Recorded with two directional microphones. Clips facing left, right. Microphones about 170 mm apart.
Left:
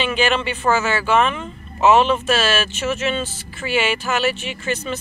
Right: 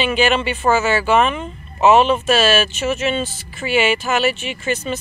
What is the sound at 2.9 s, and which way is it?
Speech, 10° right (ahead or behind).